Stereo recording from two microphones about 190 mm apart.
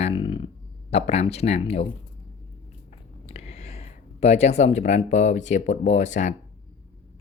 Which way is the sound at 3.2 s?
30° left (ahead or behind).